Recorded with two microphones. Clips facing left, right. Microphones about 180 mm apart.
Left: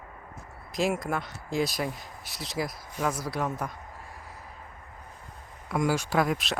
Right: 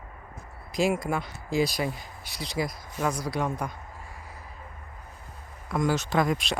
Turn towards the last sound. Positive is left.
turn(degrees=5)  # may be behind; listen again after turning